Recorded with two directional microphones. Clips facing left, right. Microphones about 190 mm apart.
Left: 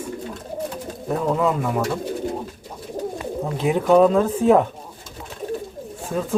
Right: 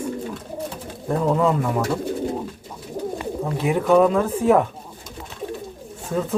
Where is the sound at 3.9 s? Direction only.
20° left (ahead or behind).